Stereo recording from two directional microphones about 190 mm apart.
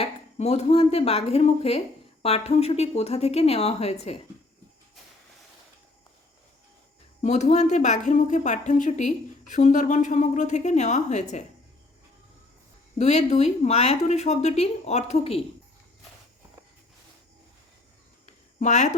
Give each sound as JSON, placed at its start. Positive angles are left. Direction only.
{"t": 0.0, "sound": "a woman's voice", "side_deg": 35}
{"t": 7.2, "sound": "a woman's voice", "side_deg": 35}
{"t": 13.0, "sound": "a woman's voice", "side_deg": 35}
{"t": 18.3, "sound": "a sound", "side_deg": 40}